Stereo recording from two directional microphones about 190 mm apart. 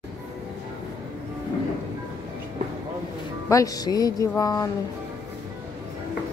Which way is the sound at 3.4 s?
15° left (ahead or behind).